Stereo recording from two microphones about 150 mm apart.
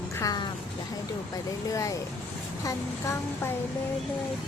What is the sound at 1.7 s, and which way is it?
Speech, 20° left (ahead or behind).